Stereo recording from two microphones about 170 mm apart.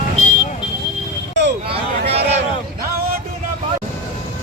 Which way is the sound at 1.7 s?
35° right (ahead or behind).